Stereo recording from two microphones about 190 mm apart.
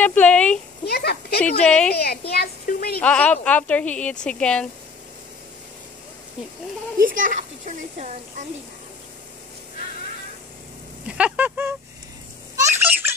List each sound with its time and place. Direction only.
0.0 s speech: 10° left (ahead or behind)
0.8 s speech: 55° left (ahead or behind)
1.4 s a woman's voice: 5° left (ahead or behind)
1.9 s a woman's voice: 55° left (ahead or behind)
3.0 s speech: 5° left (ahead or behind)
7.1 s a child's voice: 45° right (ahead or behind)
11.1 s speech: 5° right (ahead or behind)
12.5 s a sound: 15° right (ahead or behind)